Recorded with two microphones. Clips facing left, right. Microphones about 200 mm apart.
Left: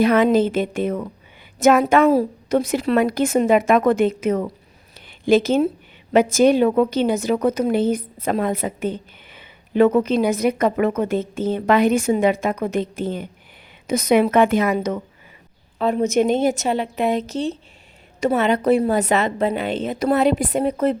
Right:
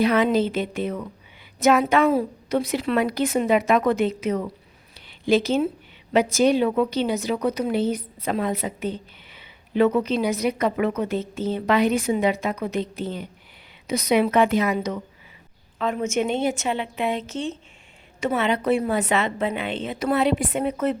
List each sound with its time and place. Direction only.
0.0 s a woman's voice: 50° left (ahead or behind)
4.9 s a sound: 50° left (ahead or behind)
6.1 s a woman's voice: 50° left (ahead or behind)
15.8 s a woman's voice: 35° left (ahead or behind)